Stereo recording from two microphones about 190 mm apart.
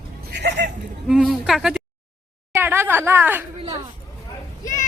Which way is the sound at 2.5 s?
10° right (ahead or behind).